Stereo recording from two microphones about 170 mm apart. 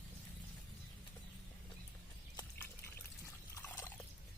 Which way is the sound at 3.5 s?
10° left (ahead or behind).